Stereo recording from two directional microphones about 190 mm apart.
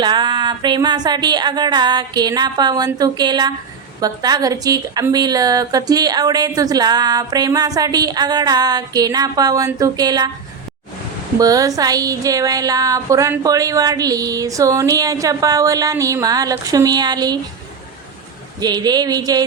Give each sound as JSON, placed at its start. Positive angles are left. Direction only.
{"t": 0.0, "sound": "a woman's voice", "side_deg": -25}
{"t": 11.3, "sound": "a woman's voice", "side_deg": -20}
{"t": 18.6, "sound": "a woman's voice", "side_deg": -20}